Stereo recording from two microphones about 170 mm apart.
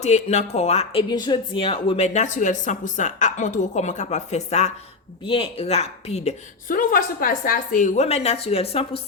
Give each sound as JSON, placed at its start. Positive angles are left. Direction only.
{"t": 0.0, "sound": "speech", "side_deg": 40}
{"t": 1.1, "sound": "a woman's voice", "side_deg": 25}
{"t": 6.7, "sound": "speech", "side_deg": 55}